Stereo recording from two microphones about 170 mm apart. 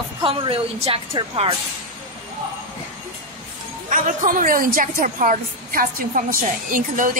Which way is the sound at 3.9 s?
55° right (ahead or behind).